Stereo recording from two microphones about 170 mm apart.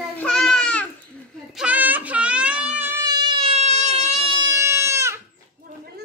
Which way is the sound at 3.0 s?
25° right (ahead or behind).